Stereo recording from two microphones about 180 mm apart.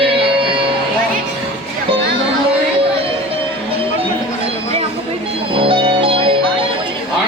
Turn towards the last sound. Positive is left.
turn(degrees=-30)  # may be behind; listen again after turning